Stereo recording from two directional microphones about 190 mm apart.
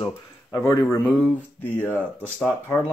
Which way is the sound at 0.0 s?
15° left (ahead or behind).